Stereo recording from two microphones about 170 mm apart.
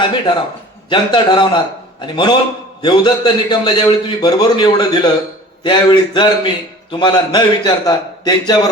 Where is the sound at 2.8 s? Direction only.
25° left (ahead or behind).